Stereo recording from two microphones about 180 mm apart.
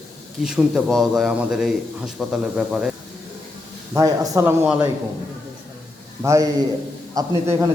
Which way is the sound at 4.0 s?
20° right (ahead or behind).